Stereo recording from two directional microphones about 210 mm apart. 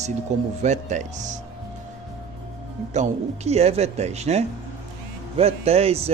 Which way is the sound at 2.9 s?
30° right (ahead or behind).